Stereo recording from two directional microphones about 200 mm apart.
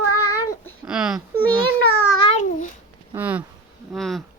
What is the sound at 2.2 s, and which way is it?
Babbling, 35° left (ahead or behind).